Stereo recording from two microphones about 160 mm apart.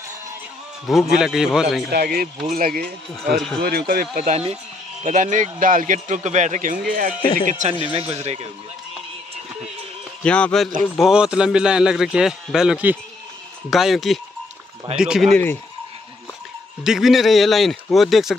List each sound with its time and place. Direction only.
1.1 s a man's voice: 5° right (ahead or behind)
1.9 s speech: 75° right (ahead or behind)
2.5 s speech: 65° right (ahead or behind)
3.2 s a man's voice: centre (ahead or behind)
3.6 s speech: 70° right (ahead or behind)
4.2 s speech: 40° right (ahead or behind)
5.0 s a man's voice: 55° right (ahead or behind)
8.1 s speech: 40° right (ahead or behind)
10.2 s a man's voice: 5° left (ahead or behind)
16.8 s a man's voice: centre (ahead or behind)